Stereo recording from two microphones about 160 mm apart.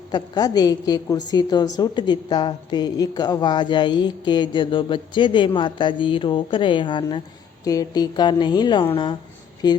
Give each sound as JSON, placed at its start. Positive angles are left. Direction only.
{"t": 0.1, "sound": "a woman's voice", "side_deg": 25}